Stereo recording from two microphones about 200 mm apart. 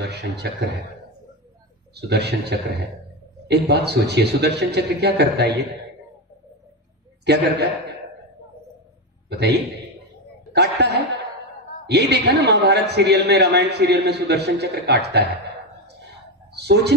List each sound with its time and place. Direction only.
0.0 s a man's voice: 55° right (ahead or behind)
2.0 s a man's voice: 55° right (ahead or behind)
7.2 s a man's voice: 55° right (ahead or behind)
9.3 s a man's voice: 55° right (ahead or behind)
16.5 s speech: 55° right (ahead or behind)